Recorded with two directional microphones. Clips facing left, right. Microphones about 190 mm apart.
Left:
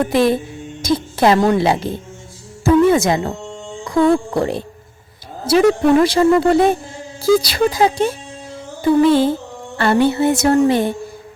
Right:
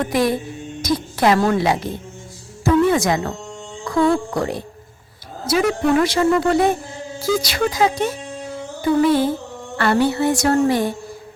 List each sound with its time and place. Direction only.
0.1 s speech: 25° left (ahead or behind)
0.8 s a sound: 25° left (ahead or behind)
2.6 s speech: 25° left (ahead or behind)
4.4 s speech: 30° left (ahead or behind)